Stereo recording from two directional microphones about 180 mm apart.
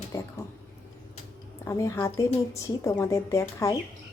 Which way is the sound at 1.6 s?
15° left (ahead or behind).